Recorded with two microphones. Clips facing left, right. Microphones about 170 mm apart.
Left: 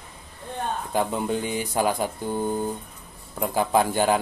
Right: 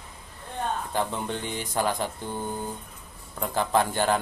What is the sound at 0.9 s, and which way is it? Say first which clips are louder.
A man's voice: left 4 dB; 10° left (ahead or behind).